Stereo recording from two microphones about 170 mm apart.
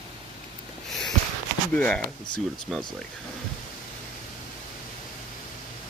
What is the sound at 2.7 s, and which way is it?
Speech, centre (ahead or behind).